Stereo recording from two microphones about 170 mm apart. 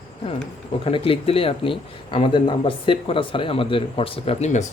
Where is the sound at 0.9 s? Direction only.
35° left (ahead or behind).